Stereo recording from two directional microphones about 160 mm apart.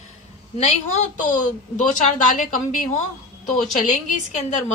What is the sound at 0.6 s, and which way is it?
A woman's voice, 45° left (ahead or behind).